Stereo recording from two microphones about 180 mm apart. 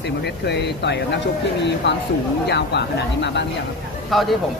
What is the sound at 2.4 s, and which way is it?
Speech, 70° left (ahead or behind).